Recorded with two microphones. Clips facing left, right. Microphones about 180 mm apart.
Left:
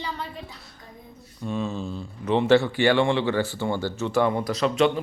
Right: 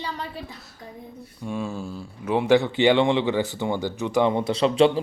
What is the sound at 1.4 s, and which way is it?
A man's voice, 10° right (ahead or behind).